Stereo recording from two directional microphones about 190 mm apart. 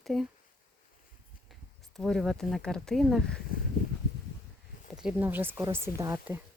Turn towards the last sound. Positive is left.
turn(degrees=-15)  # may be behind; listen again after turning